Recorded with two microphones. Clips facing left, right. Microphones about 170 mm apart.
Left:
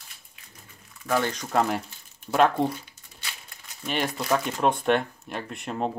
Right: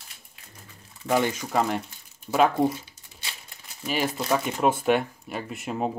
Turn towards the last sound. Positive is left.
turn(degrees=-5)  # may be behind; listen again after turning